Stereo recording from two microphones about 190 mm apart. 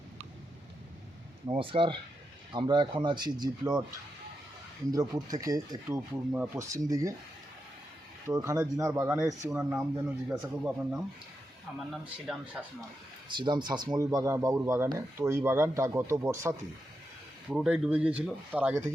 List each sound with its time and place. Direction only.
1.5 s speech: 30° right (ahead or behind)
4.9 s speech: 20° right (ahead or behind)
8.3 s speech: 15° right (ahead or behind); by 12.6 s centre (ahead or behind)
13.2 s speech: 25° right (ahead or behind)